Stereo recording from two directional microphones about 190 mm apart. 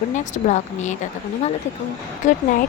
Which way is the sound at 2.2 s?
40° left (ahead or behind).